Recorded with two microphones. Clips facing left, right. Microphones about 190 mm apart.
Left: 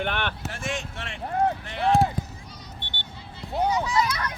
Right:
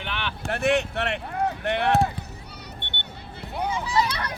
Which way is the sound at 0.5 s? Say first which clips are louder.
Right 10 dB; 65° right (ahead or behind).